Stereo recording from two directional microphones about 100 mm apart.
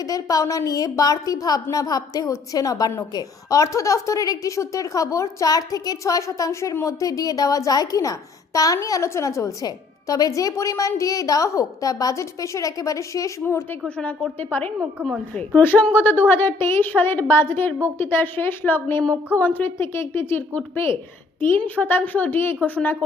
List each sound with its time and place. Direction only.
0.0 s a woman's voice: 35° left (ahead or behind)
13.8 s a woman's voice: 10° left (ahead or behind)